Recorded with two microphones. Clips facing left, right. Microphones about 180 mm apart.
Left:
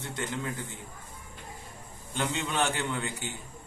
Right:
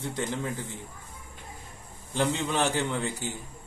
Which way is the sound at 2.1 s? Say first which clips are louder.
Right 3 dB; 35° right (ahead or behind).